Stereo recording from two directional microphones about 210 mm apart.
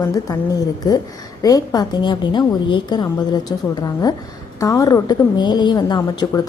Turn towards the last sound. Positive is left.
turn(degrees=20)  # may be behind; listen again after turning